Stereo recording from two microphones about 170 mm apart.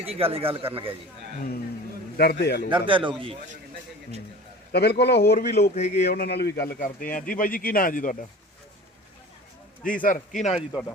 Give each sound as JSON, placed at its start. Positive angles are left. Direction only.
{"t": 0.0, "sound": "speech", "side_deg": -35}
{"t": 2.1, "sound": "a man's voice", "side_deg": 65}
{"t": 2.6, "sound": "a man's voice", "side_deg": -30}
{"t": 4.7, "sound": "a man's voice", "side_deg": 70}
{"t": 5.5, "sound": "a man's voice", "side_deg": 40}
{"t": 6.1, "sound": "speech", "side_deg": 70}
{"t": 9.8, "sound": "a man's voice", "side_deg": 55}